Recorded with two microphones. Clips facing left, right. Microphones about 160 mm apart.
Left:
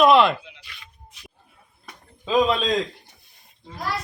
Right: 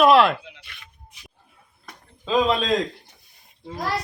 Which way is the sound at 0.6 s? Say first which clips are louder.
Left 1 dB; 55° right (ahead or behind).